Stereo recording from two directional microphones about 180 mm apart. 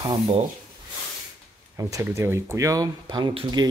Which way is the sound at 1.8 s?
15° right (ahead or behind).